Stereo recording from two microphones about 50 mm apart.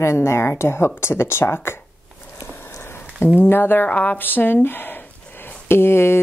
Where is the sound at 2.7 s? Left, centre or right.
Left.